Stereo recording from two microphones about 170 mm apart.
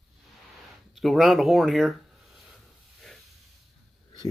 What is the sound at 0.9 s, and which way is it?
Speech, centre (ahead or behind).